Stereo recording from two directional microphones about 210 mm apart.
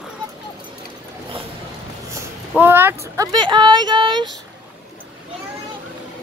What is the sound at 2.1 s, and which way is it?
Speech, 10° right (ahead or behind).